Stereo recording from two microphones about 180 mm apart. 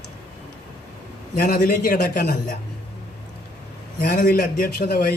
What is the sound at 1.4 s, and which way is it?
A man's voice, 55° left (ahead or behind).